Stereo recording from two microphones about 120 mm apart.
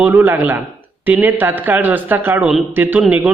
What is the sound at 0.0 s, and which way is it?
Speech, 15° right (ahead or behind).